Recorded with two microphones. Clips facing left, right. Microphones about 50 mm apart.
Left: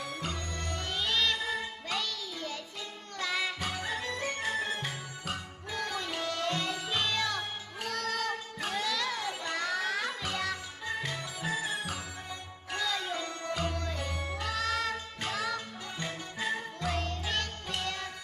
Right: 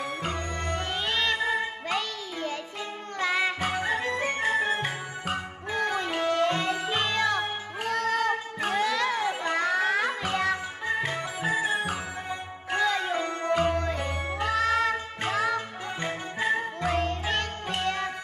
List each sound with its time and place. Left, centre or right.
0.0 s music: right